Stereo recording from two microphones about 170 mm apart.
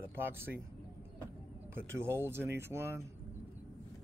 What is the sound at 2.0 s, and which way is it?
Speech, 15° right (ahead or behind).